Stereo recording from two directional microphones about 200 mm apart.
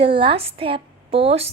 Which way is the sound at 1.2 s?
30° right (ahead or behind).